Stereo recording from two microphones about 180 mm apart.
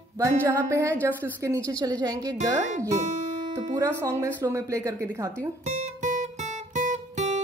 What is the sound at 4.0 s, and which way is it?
A woman's voice, 15° right (ahead or behind).